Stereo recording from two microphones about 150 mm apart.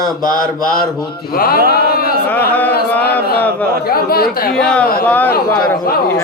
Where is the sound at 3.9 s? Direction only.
85° left.